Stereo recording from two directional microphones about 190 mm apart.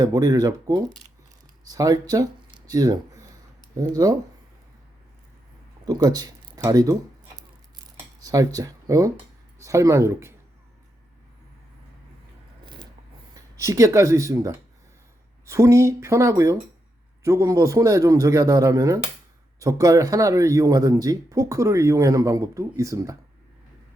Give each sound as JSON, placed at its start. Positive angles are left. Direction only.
{"t": 0.0, "sound": "speech", "side_deg": -20}
{"t": 5.8, "sound": "speech", "side_deg": -20}
{"t": 8.2, "sound": "speech", "side_deg": -20}
{"t": 12.6, "sound": "a sound", "side_deg": -20}
{"t": 13.3, "sound": "speech", "side_deg": -15}